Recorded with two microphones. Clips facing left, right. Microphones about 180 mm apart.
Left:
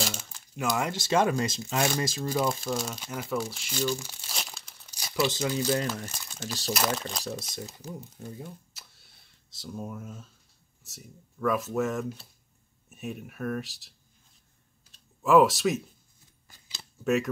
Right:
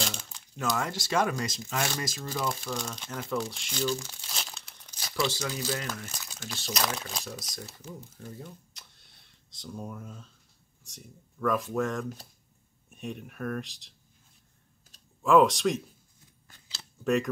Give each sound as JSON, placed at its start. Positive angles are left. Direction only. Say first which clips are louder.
{"t": 0.0, "sound": "speech", "louder": "left 2 dB", "side_deg": 5}
{"t": 2.6, "sound": "speech", "louder": "left 4 dB", "side_deg": 5}
{"t": 6.4, "sound": "speech", "louder": "left 5 dB", "side_deg": 35}
{"t": 6.7, "sound": "speech", "louder": "left 3 dB", "side_deg": 0}
{"t": 7.5, "sound": "speech", "louder": "left 4 dB", "side_deg": 15}
{"t": 8.7, "sound": "a sound", "louder": "left 1 dB", "side_deg": 5}
{"t": 10.8, "sound": "speech", "louder": "left 1 dB", "side_deg": 5}
{"t": 15.2, "sound": "speech", "louder": "left 1 dB", "side_deg": 5}
{"t": 17.0, "sound": "cutlery", "louder": "left 1 dB", "side_deg": 0}